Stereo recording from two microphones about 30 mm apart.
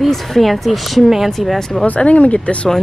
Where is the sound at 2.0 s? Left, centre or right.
Left.